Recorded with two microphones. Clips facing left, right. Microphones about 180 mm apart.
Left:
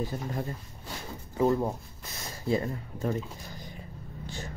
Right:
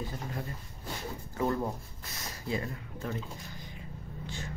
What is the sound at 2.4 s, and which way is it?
Speech, 35° left (ahead or behind).